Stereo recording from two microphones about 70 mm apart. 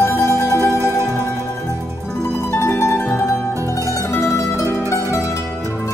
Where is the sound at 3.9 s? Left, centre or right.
Left.